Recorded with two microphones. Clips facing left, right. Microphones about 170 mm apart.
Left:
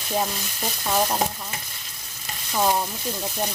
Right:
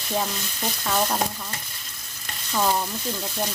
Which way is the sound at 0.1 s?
10° left (ahead or behind).